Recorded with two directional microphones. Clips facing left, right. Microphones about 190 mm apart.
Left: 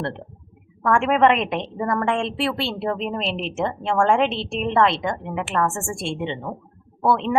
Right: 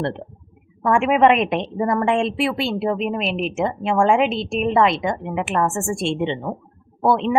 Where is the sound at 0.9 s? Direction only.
15° right (ahead or behind).